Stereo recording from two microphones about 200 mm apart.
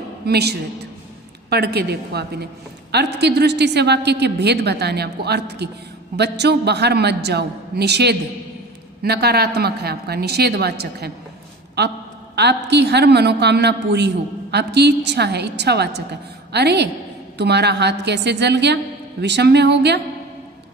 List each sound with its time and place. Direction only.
0.3 s a woman's voice: 55° right (ahead or behind)
12.4 s a woman's voice: 55° right (ahead or behind)